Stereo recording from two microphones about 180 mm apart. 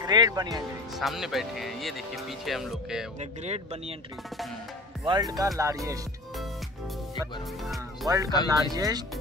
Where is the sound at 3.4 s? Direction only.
35° right (ahead or behind).